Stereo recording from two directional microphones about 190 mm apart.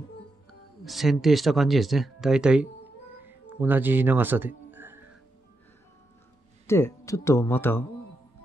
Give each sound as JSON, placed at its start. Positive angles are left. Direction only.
{"t": 0.8, "sound": "speech", "side_deg": 0}
{"t": 3.2, "sound": "music", "side_deg": -10}
{"t": 6.7, "sound": "speech", "side_deg": 15}